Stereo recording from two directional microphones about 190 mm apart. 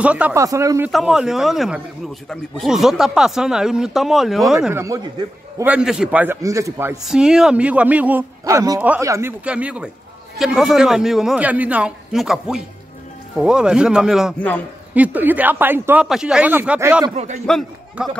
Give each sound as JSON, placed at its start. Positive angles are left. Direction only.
{"t": 0.0, "sound": "a man's voice", "side_deg": -5}
{"t": 0.9, "sound": "speech", "side_deg": -5}
{"t": 4.6, "sound": "a man's voice", "side_deg": -15}
{"t": 7.1, "sound": "a man's voice", "side_deg": -5}
{"t": 17.1, "sound": "a man's voice", "side_deg": -35}
{"t": 17.5, "sound": "a man's voice", "side_deg": 0}